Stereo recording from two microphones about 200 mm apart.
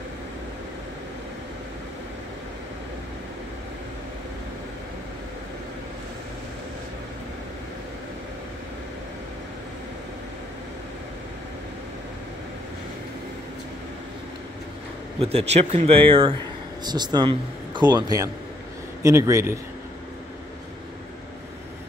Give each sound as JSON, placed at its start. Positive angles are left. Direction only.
{"t": 15.1, "sound": "a man's voice", "side_deg": -30}